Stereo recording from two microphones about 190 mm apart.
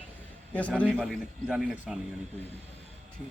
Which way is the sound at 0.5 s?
5° left (ahead or behind).